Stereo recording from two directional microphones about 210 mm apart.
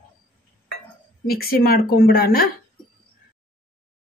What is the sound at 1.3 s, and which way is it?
Speech, 45° left (ahead or behind).